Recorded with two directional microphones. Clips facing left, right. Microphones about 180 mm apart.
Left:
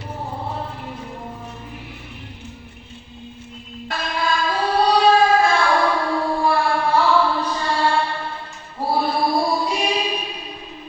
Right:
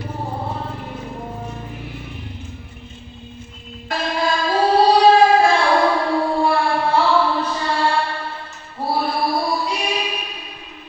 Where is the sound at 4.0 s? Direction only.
30° right (ahead or behind).